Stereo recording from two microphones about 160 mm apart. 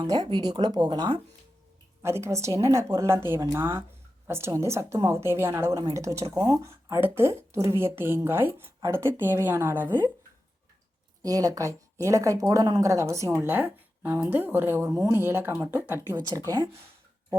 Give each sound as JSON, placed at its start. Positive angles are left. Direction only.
{"t": 0.0, "sound": "speech", "side_deg": -25}
{"t": 2.0, "sound": "speech", "side_deg": -15}
{"t": 11.2, "sound": "speech", "side_deg": -20}
{"t": 16.1, "sound": "speech", "side_deg": -25}